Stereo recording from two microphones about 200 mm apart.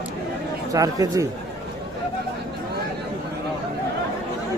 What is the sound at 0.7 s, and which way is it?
Speech, 15° right (ahead or behind).